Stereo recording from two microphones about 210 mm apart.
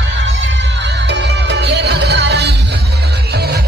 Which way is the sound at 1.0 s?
55° right (ahead or behind).